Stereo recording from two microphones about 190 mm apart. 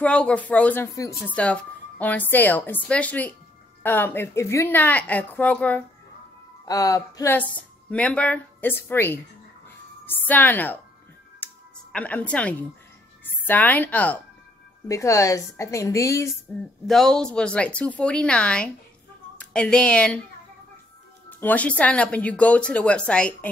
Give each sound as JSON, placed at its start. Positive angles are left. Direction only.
{"t": 0.0, "sound": "a woman's voice", "side_deg": 5}
{"t": 6.6, "sound": "a woman's voice", "side_deg": 20}
{"t": 11.3, "sound": "music", "side_deg": 10}
{"t": 13.2, "sound": "a woman's voice", "side_deg": 10}
{"t": 21.3, "sound": "a woman's voice", "side_deg": 10}